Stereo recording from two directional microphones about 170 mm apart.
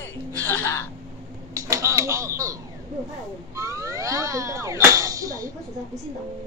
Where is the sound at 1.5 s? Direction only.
20° right (ahead or behind).